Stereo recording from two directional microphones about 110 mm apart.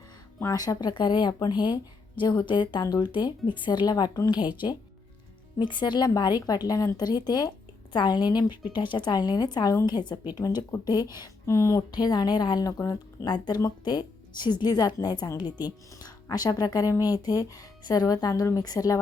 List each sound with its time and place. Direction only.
0.5 s a woman's voice: 35° left (ahead or behind)
5.5 s a woman's voice: 45° left (ahead or behind); by 11.8 s 25° left (ahead or behind)
11.9 s a woman's voice: 40° left (ahead or behind)